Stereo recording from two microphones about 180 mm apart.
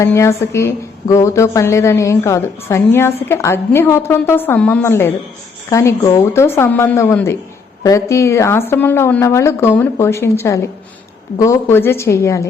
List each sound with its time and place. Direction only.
0.0 s a woman's voice: 15° left (ahead or behind)